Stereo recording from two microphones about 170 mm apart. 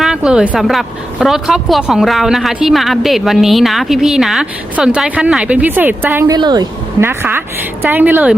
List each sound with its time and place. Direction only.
0.0 s a woman's voice: 5° right (ahead or behind)
6.3 s a woman's voice: 25° right (ahead or behind)
7.0 s a woman's voice: 15° right (ahead or behind)